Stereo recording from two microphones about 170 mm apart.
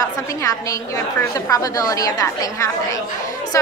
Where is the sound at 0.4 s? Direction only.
20° left (ahead or behind).